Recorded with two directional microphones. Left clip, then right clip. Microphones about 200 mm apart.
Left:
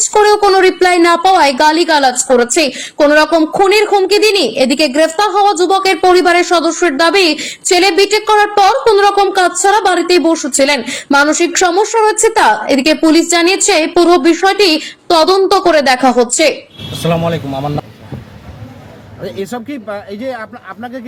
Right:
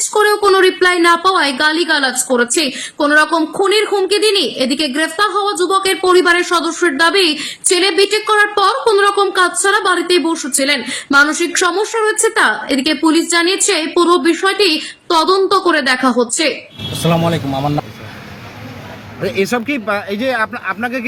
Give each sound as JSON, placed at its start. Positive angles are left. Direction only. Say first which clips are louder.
{"t": 0.3, "sound": "a woman's voice", "louder": "left 1 dB", "side_deg": 5}
{"t": 19.2, "sound": "speech", "louder": "right 5 dB", "side_deg": -40}